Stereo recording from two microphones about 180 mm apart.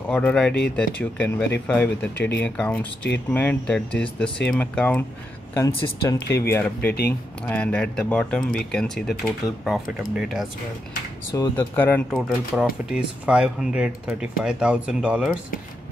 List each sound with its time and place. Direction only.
0.1 s speech: 5° left (ahead or behind)
9.4 s speech: 20° left (ahead or behind)
10.1 s speech: centre (ahead or behind)
11.3 s speech: 15° left (ahead or behind)
12.1 s speech: centre (ahead or behind)